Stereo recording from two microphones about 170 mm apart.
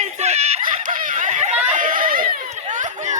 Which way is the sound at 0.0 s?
40° right (ahead or behind).